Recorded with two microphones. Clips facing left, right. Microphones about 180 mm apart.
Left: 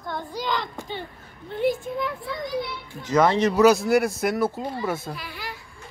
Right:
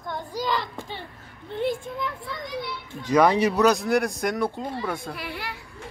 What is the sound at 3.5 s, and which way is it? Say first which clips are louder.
Speech: left 3 dB; 5° left (ahead or behind).